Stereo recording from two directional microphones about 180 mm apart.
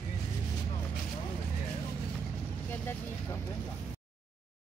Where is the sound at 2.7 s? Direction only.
10° left (ahead or behind).